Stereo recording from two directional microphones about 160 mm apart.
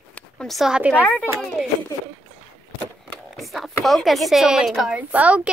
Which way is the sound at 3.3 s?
Centre (ahead or behind).